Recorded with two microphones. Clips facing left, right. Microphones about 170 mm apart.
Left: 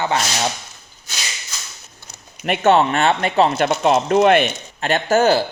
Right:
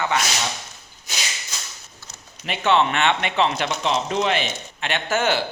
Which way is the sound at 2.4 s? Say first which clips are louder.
Left 5 dB; 50° left (ahead or behind).